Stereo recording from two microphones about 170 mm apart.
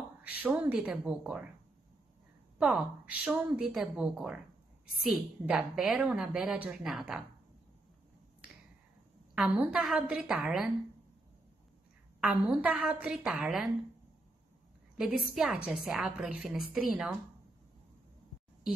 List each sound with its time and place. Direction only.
0.2 s speech: 10° right (ahead or behind)
2.6 s a woman's voice: 5° right (ahead or behind)
9.3 s a woman's voice: 5° right (ahead or behind)
12.2 s a woman's voice: 5° right (ahead or behind)
15.0 s a woman's voice: 5° right (ahead or behind)